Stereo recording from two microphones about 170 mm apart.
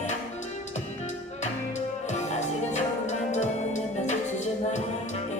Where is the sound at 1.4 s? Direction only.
45° left (ahead or behind).